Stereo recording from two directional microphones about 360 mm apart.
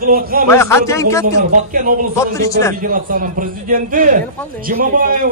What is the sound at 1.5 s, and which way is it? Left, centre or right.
Speech, right.